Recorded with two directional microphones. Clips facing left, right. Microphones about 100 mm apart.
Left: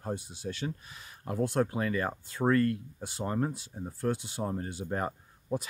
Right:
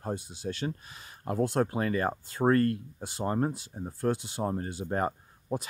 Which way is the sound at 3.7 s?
20° right (ahead or behind).